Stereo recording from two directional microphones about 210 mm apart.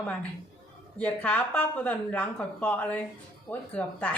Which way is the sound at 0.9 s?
5° left (ahead or behind).